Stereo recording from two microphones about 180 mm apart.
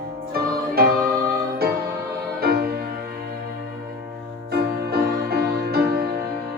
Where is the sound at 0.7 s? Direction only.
60° right (ahead or behind).